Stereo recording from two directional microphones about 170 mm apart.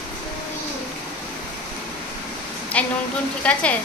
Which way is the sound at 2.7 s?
10° left (ahead or behind).